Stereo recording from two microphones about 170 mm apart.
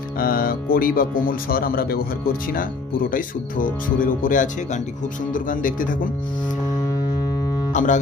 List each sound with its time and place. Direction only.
0.2 s speech: 60° left (ahead or behind)
7.7 s speech: 45° left (ahead or behind)